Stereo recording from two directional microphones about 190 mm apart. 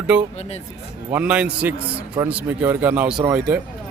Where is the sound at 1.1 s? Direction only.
5° right (ahead or behind).